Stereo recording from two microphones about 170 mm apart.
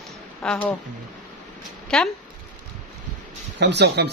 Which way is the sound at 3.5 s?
90° right.